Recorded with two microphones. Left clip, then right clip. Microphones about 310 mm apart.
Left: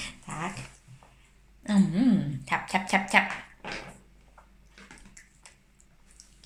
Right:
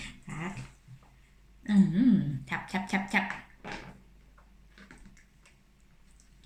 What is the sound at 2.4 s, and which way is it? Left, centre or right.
Speech, centre.